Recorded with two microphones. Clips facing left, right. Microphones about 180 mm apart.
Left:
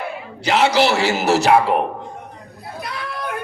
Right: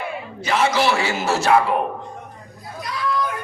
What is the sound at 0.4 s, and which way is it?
A man's voice, 75° left (ahead or behind).